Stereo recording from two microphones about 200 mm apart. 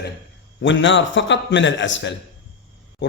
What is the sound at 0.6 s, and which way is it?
Speech, 65° left (ahead or behind).